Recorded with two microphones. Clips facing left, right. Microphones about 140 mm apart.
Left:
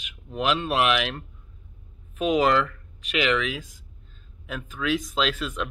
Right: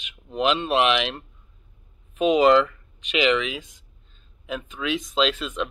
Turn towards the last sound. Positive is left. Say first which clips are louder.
# right 3 dB
turn(degrees=0)  # may be behind; listen again after turning